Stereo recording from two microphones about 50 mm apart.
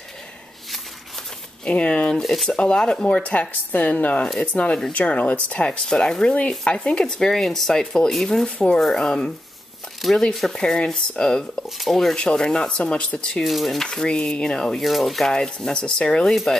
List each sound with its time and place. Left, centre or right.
1.6 s speech: left
5.7 s speech: centre
8.5 s speech: centre
10.0 s speech: centre
10.5 s speech: centre
11.8 s speech: centre
12.2 s speech: centre
13.4 s speech: centre
13.8 s speech: centre
14.8 s speech: centre
15.3 s speech: centre